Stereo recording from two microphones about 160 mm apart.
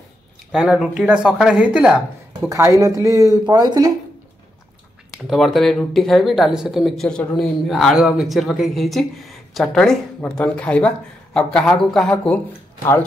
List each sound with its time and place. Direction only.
0.5 s speech: centre (ahead or behind)
2.5 s speech: 20° right (ahead or behind)
5.2 s speech: centre (ahead or behind)